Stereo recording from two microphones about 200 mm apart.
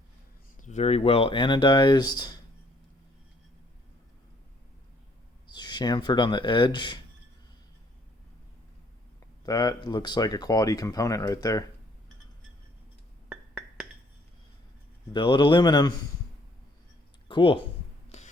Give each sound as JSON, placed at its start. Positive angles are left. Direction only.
{"t": 0.5, "sound": "speech", "side_deg": 40}
{"t": 5.5, "sound": "speech", "side_deg": 20}
{"t": 9.5, "sound": "speech", "side_deg": 20}
{"t": 13.2, "sound": "music", "side_deg": -5}
{"t": 15.1, "sound": "speech", "side_deg": 25}
{"t": 17.2, "sound": "speech", "side_deg": 25}
{"t": 18.1, "sound": "music", "side_deg": 35}